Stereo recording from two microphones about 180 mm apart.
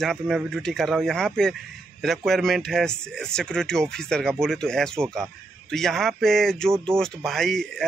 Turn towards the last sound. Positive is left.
turn(degrees=0)  # may be behind; listen again after turning